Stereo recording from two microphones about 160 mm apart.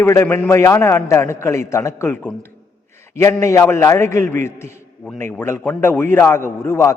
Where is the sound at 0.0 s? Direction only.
15° left (ahead or behind).